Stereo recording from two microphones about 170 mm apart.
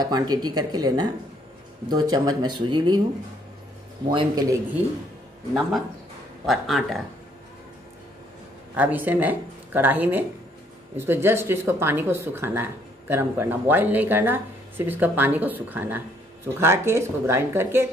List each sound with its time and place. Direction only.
0.0 s speech: 25° right (ahead or behind)
4.1 s speech: 25° right (ahead or behind)
6.4 s speech: centre (ahead or behind)
8.7 s speech: 10° right (ahead or behind)